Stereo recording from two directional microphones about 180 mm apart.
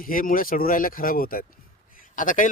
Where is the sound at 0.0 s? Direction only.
50° left (ahead or behind).